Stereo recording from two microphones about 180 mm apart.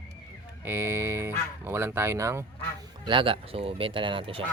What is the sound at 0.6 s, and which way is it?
Speech, 15° right (ahead or behind).